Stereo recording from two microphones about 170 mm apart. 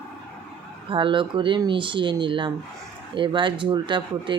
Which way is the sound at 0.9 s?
30° right (ahead or behind).